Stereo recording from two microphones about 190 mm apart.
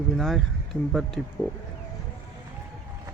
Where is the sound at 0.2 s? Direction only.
Centre (ahead or behind).